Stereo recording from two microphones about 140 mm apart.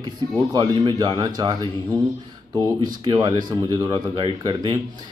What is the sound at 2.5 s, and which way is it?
Speech, 30° right (ahead or behind).